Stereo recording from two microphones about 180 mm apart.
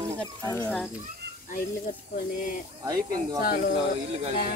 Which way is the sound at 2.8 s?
20° right (ahead or behind).